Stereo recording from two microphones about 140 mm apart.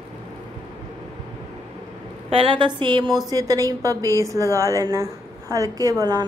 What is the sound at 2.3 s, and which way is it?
A woman's voice, 40° right (ahead or behind).